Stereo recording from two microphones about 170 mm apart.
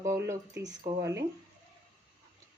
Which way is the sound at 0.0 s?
15° right (ahead or behind).